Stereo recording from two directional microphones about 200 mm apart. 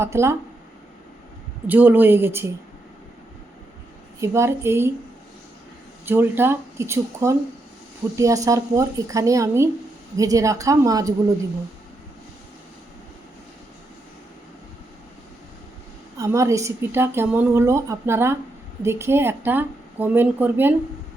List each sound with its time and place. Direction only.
0.0 s a woman's voice: 15° right (ahead or behind)
1.6 s a woman's voice: 10° right (ahead or behind)
4.2 s a woman's voice: 15° right (ahead or behind)
6.1 s a woman's voice: 10° right (ahead or behind)
16.1 s a woman's voice: 15° right (ahead or behind)